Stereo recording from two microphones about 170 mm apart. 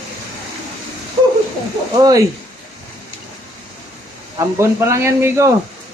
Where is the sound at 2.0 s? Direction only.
20° right (ahead or behind).